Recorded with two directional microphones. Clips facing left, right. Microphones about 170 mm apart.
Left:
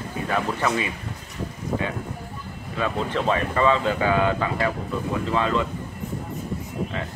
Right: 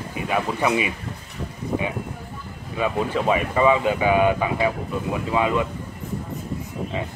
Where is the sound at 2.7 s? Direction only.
10° right (ahead or behind).